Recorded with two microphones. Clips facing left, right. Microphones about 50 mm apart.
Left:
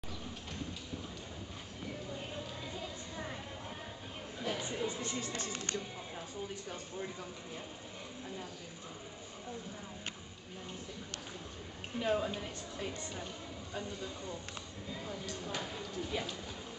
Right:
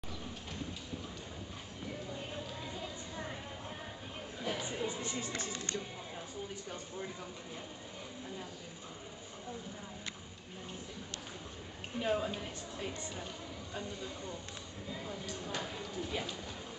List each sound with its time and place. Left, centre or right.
2.0 s a sound: centre
4.4 s music: centre
5.5 s music: left
12.0 s speech: centre
14.9 s speech: centre